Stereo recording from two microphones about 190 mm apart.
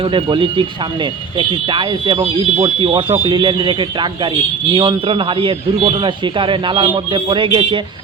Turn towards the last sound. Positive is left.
turn(degrees=-25)  # may be behind; listen again after turning